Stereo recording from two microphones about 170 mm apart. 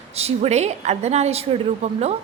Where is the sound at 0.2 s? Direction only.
35° right (ahead or behind).